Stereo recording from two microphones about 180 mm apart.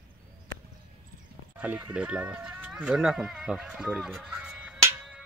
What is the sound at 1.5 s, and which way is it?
Speech, 10° right (ahead or behind).